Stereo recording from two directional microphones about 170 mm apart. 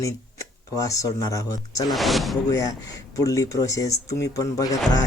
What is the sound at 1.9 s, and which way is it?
Speech, centre (ahead or behind).